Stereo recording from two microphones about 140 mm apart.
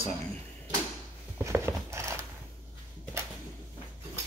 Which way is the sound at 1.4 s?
20° right (ahead or behind).